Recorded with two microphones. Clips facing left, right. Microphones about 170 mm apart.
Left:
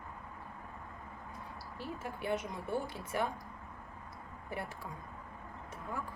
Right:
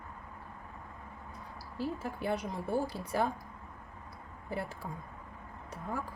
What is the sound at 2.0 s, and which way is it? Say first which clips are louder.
Speech: right 2 dB; 35° right (ahead or behind).